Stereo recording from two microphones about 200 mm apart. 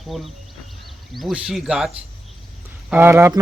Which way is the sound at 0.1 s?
Centre (ahead or behind).